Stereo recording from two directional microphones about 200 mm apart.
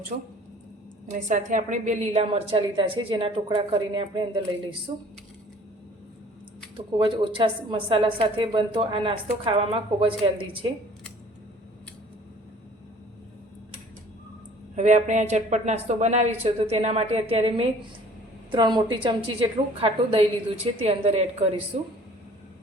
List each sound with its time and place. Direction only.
0.1 s a woman's voice: 45° right (ahead or behind); by 5.0 s 25° right (ahead or behind)
7.0 s a woman's voice: 25° right (ahead or behind)
14.8 s a woman's voice: 35° right (ahead or behind)